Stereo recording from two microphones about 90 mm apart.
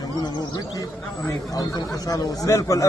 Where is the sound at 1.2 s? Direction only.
45° left (ahead or behind).